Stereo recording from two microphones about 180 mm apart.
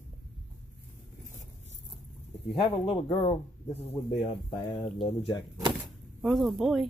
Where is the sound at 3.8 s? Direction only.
30° left (ahead or behind).